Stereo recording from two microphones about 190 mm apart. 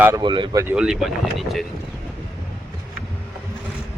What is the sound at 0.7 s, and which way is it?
Speech, 5° right (ahead or behind).